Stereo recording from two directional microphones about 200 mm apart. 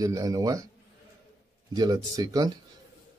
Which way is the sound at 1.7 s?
20° right (ahead or behind).